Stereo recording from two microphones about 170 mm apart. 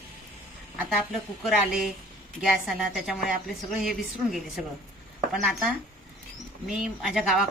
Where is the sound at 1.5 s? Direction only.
5° right (ahead or behind).